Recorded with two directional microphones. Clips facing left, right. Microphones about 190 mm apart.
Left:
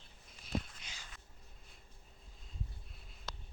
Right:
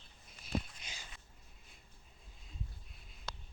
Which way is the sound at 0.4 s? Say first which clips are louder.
Right 1 dB; 15° right (ahead or behind).